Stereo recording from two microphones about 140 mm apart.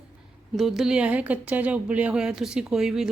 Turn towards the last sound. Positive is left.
turn(degrees=-5)  # may be behind; listen again after turning